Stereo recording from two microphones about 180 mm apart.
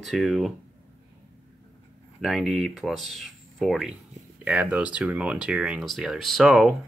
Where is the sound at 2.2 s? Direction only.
Centre (ahead or behind).